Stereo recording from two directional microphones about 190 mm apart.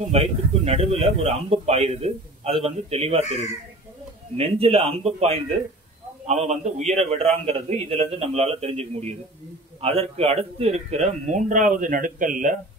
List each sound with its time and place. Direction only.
0.1 s a man's voice: 30° right (ahead or behind)
4.4 s a man's voice: 30° right (ahead or behind)